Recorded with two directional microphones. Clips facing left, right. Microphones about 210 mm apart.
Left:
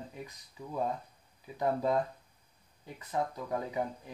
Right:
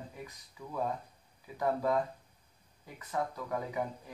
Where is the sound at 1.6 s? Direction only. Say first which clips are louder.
Left 1 dB; 25° left (ahead or behind).